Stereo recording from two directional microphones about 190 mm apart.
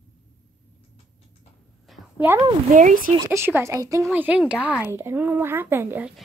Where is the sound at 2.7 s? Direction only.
40° right (ahead or behind).